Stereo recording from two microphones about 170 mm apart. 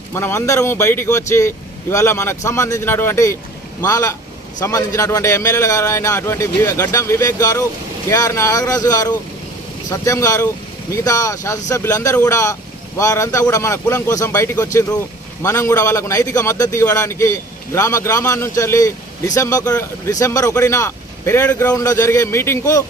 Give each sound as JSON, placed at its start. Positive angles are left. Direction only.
{"t": 0.1, "sound": "a man's voice", "side_deg": 15}